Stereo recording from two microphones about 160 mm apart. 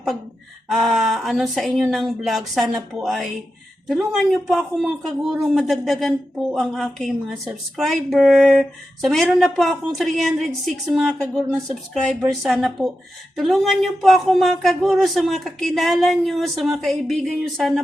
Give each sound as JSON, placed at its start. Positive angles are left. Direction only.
{"t": 0.7, "sound": "speech", "side_deg": 0}
{"t": 4.4, "sound": "speech", "side_deg": 0}